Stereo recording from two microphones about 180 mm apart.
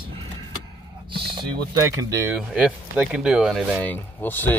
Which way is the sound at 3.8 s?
10° left (ahead or behind).